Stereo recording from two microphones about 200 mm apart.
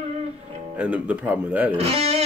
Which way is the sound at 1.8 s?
30° right (ahead or behind).